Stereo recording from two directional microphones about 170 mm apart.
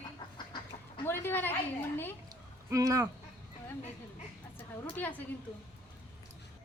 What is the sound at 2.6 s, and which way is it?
Speech, 20° right (ahead or behind).